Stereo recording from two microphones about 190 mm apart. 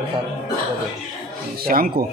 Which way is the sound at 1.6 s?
50° right (ahead or behind).